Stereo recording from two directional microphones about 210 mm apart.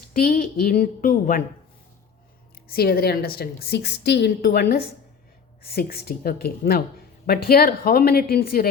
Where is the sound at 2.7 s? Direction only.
45° left (ahead or behind).